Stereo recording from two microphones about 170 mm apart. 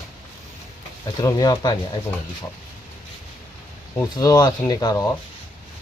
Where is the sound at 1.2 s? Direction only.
20° left (ahead or behind).